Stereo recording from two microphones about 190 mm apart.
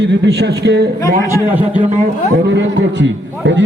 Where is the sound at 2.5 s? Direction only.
70° right (ahead or behind).